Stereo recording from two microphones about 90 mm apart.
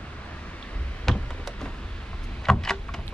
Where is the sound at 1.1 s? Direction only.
5° left (ahead or behind).